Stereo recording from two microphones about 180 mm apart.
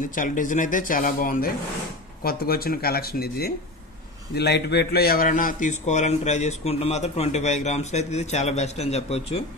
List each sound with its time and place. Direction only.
0.1 s a man's voice: 45° left (ahead or behind)